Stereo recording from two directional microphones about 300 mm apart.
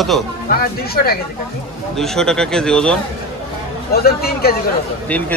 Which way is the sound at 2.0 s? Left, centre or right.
Centre.